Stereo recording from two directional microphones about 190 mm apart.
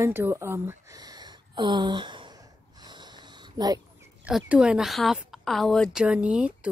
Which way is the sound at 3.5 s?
20° right (ahead or behind).